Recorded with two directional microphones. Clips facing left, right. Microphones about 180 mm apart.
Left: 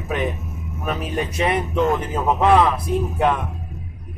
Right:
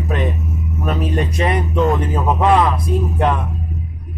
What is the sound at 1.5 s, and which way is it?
Speech, centre (ahead or behind).